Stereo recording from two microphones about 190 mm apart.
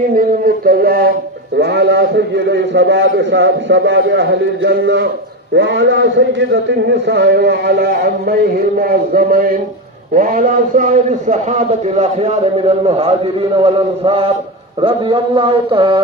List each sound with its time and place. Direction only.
0.2 s a sound: 50° right (ahead or behind)
1.5 s a man's voice: 60° right (ahead or behind); by 5.0 s 85° right
5.5 s a man's voice: 70° right (ahead or behind); by 16.0 s 25° right (ahead or behind)